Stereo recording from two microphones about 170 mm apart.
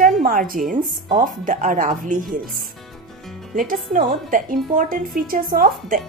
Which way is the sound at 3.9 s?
50° right (ahead or behind).